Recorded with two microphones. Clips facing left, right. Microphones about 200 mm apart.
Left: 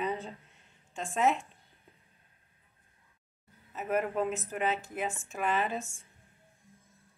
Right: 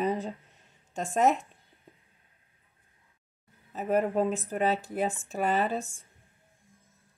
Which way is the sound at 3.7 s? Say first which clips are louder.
Right 4 dB; 35° right (ahead or behind).